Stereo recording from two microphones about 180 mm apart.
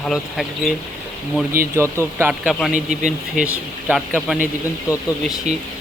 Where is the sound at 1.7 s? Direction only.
15° right (ahead or behind).